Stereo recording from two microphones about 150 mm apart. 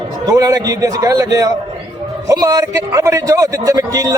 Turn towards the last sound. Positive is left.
turn(degrees=-25)  # may be behind; listen again after turning